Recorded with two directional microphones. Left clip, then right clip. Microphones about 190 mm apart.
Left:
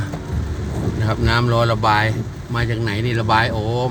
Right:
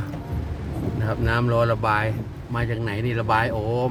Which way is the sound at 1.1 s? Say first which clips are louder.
Left 4 dB; 5° right (ahead or behind).